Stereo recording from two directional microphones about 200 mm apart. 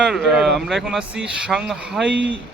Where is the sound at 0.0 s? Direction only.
Centre (ahead or behind).